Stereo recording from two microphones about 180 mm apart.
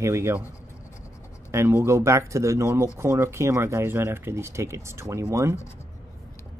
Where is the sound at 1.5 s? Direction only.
15° right (ahead or behind).